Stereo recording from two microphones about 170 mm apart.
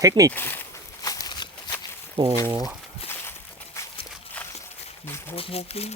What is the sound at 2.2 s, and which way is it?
Speech, 30° right (ahead or behind).